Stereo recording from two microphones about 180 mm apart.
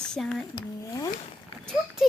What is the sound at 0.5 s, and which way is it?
Speech, 20° left (ahead or behind).